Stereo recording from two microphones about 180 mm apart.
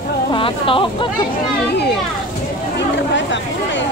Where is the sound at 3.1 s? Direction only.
90° left.